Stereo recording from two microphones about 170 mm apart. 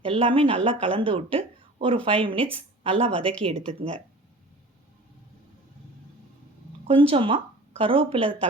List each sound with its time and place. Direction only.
0.0 s a woman's voice: 35° right (ahead or behind)
6.8 s speech: 30° right (ahead or behind)